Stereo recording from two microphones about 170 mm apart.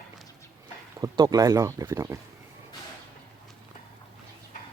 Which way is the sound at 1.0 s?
20° right (ahead or behind).